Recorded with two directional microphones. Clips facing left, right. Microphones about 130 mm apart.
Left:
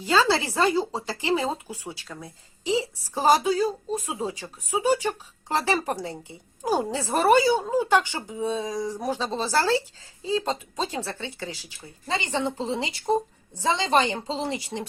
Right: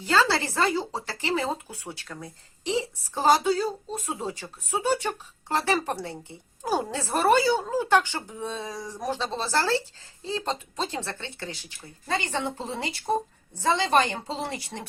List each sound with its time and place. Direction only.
0.0 s a woman's voice: 15° left (ahead or behind)
2.1 s a woman's voice: centre (ahead or behind); by 14.8 s 20° left (ahead or behind)